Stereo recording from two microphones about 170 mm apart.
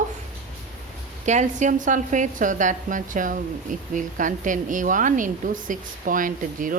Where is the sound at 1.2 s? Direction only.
45° right (ahead or behind).